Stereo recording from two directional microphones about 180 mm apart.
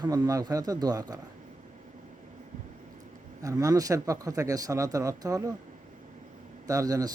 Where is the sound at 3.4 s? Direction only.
20° right (ahead or behind).